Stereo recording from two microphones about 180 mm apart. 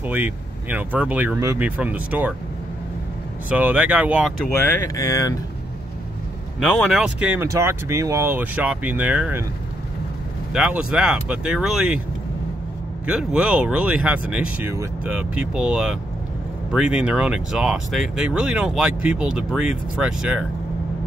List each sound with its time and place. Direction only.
0.0 s speech: 10° right (ahead or behind)
3.4 s speech: 10° right (ahead or behind)
4.8 s speech: 20° left (ahead or behind)
6.6 s speech: centre (ahead or behind)
10.5 s speech: 5° right (ahead or behind)
13.0 s speech: 5° right (ahead or behind)